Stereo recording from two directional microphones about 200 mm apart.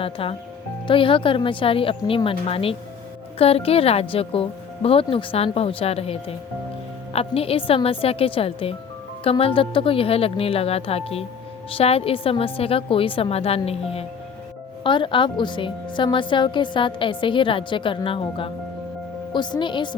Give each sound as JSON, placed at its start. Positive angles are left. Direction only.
{"t": 0.0, "sound": "a woman's voice", "side_deg": 25}